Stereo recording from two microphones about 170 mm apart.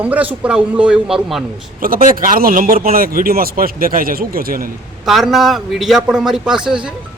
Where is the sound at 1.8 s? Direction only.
55° right (ahead or behind).